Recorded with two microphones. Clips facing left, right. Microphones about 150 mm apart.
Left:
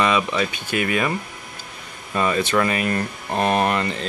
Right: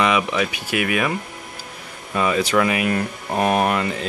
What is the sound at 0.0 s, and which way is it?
Speech, 10° right (ahead or behind).